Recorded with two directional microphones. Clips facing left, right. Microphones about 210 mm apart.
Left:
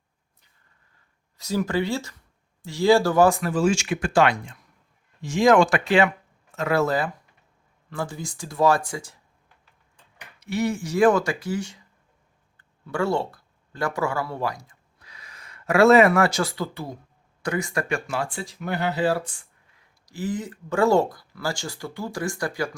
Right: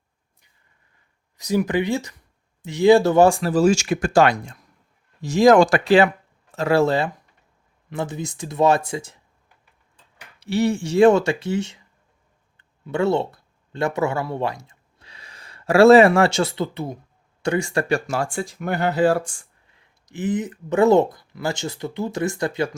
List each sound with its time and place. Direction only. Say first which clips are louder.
1.4 s speech: right 3 dB; 15° right (ahead or behind)
10.4 s speech: right 4 dB; 30° right (ahead or behind); by 19.5 s 45° right (ahead or behind)
20.1 s speech: right 5 dB; 20° right (ahead or behind)